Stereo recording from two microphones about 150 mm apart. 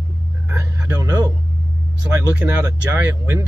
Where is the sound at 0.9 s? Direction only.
25° right (ahead or behind).